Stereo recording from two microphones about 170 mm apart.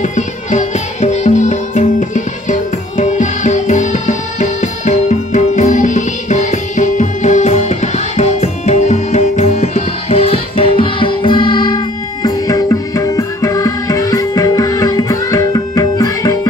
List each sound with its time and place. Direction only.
0.0 s music: 45° left (ahead or behind); by 16.3 s 20° left (ahead or behind)